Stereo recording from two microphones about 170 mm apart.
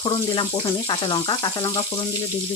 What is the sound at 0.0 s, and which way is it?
Speech, 30° left (ahead or behind).